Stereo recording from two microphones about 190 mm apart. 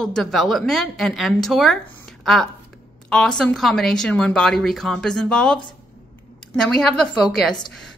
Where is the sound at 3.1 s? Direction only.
5° left (ahead or behind).